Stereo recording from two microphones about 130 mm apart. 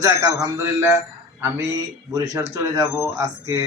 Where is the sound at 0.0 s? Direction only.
20° right (ahead or behind).